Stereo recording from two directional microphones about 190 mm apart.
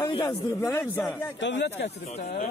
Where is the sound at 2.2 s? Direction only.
50° left (ahead or behind).